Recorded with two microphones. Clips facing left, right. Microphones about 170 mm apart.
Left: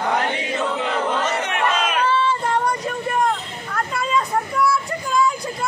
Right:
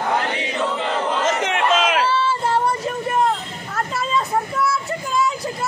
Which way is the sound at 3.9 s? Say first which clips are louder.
Even; 25° right (ahead or behind).